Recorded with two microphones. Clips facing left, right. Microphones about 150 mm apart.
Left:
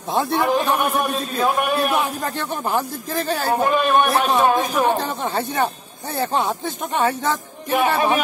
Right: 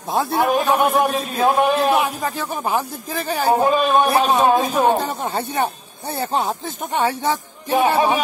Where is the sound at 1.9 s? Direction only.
5° right (ahead or behind).